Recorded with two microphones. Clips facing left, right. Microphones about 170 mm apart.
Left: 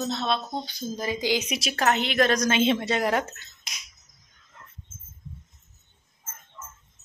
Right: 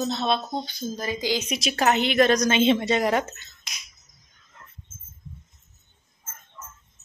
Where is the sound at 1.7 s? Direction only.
5° right (ahead or behind).